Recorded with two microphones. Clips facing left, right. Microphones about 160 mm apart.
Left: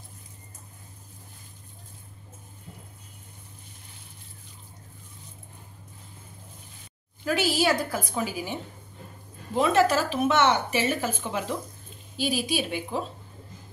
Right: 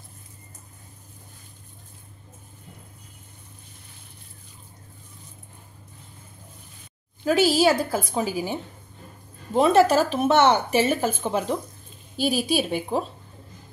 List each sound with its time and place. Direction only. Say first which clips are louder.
7.2 s speech: right 5 dB; 30° right (ahead or behind)
9.6 s speech: right 4 dB; 35° right (ahead or behind)